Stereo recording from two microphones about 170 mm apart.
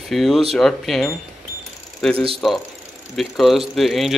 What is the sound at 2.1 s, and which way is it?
Speech, 35° right (ahead or behind).